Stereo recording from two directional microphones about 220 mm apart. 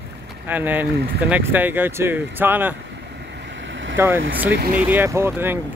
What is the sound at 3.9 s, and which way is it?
Speech, 10° right (ahead or behind).